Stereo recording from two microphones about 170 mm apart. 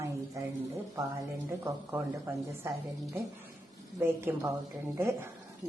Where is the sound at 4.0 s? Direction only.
15° right (ahead or behind).